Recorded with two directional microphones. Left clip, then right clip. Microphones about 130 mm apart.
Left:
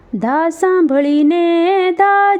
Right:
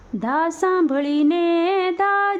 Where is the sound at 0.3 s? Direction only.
35° left (ahead or behind).